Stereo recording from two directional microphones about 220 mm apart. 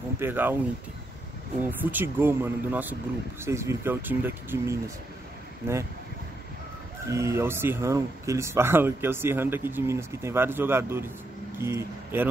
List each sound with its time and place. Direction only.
0.2 s speech: 10° right (ahead or behind)
1.6 s speech: 10° right (ahead or behind)
7.1 s speech: 15° right (ahead or behind)